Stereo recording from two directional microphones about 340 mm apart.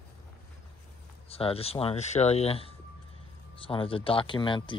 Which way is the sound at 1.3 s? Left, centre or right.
Centre.